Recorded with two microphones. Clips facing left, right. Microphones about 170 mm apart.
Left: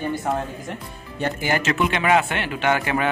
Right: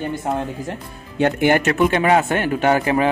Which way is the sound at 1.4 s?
55° right (ahead or behind).